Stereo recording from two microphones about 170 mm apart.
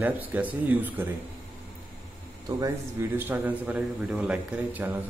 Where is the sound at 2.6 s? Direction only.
15° right (ahead or behind).